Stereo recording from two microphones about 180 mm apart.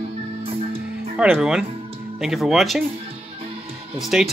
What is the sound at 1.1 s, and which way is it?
Speech, 5° right (ahead or behind).